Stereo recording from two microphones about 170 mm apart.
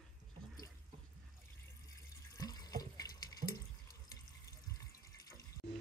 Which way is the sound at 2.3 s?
20° left (ahead or behind).